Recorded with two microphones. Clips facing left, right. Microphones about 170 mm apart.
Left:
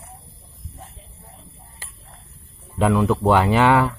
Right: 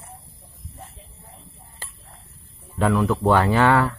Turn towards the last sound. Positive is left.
turn(degrees=15)  # may be behind; listen again after turning